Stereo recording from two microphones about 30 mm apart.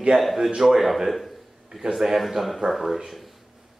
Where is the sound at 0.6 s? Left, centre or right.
Centre.